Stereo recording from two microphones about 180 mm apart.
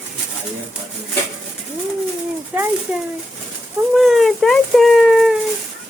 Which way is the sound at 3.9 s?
Centre (ahead or behind).